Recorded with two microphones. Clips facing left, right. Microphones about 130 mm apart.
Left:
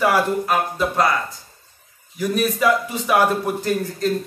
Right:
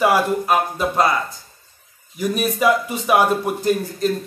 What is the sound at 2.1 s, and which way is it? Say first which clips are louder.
A man's voice: even; 15° right (ahead or behind).